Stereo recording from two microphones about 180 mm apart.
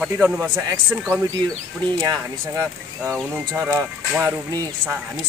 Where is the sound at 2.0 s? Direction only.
20° right (ahead or behind).